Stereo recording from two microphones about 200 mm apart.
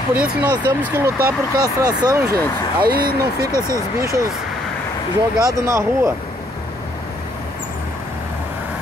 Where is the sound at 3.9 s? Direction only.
15° right (ahead or behind).